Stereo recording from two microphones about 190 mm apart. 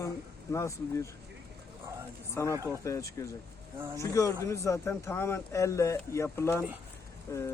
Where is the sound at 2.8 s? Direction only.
15° left (ahead or behind).